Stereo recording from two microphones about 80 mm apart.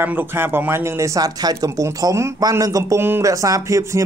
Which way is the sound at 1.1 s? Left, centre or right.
Right.